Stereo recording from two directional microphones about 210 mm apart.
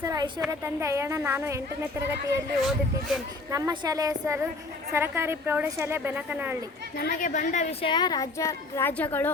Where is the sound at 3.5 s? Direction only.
15° right (ahead or behind).